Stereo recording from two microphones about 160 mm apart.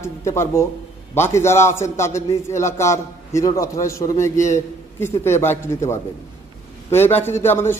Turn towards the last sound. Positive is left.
turn(degrees=15)  # may be behind; listen again after turning